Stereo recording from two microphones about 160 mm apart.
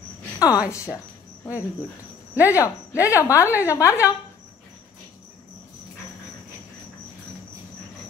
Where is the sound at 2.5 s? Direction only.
20° left (ahead or behind).